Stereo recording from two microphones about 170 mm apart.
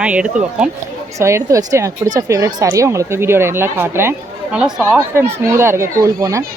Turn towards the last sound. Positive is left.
turn(degrees=-20)  # may be behind; listen again after turning